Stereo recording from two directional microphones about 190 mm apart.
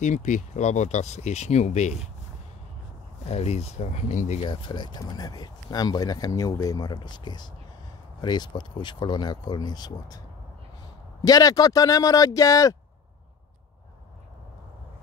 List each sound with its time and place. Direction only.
0.0 s speech: 40° left (ahead or behind)
3.3 s speech: 35° left (ahead or behind)
11.2 s speech: 20° left (ahead or behind)